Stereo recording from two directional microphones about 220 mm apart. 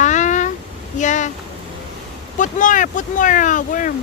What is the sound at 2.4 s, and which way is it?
Speech, 35° left (ahead or behind).